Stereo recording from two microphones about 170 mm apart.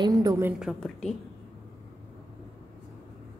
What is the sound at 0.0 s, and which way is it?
Speech, 20° right (ahead or behind).